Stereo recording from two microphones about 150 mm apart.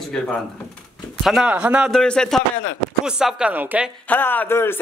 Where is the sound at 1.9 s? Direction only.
5° left (ahead or behind).